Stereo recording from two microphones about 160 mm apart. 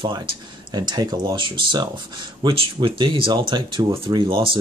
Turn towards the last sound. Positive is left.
turn(degrees=-30)  # may be behind; listen again after turning